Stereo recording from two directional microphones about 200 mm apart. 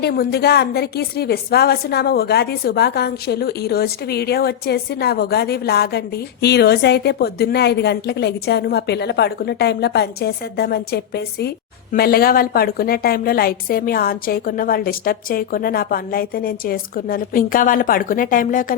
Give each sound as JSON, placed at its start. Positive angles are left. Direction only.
{"t": 0.0, "sound": "a woman's voice", "side_deg": 50}